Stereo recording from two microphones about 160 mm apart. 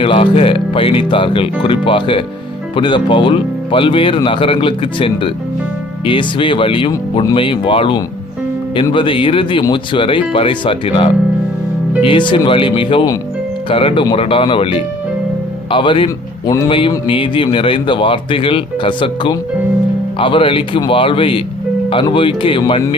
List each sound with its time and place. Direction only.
0.0 s speech: 35° left (ahead or behind)
16.6 s speech: 30° left (ahead or behind)